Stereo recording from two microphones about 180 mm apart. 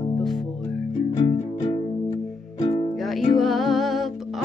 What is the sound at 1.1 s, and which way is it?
Music, 40° left (ahead or behind).